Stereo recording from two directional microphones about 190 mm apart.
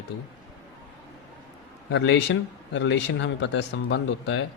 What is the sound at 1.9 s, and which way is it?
Speech, 65° left (ahead or behind).